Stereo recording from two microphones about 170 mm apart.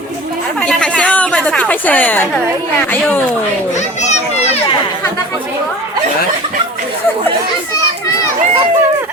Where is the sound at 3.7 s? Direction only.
45° left (ahead or behind).